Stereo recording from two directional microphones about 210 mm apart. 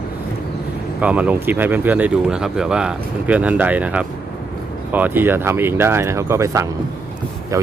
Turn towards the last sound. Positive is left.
turn(degrees=-15)  # may be behind; listen again after turning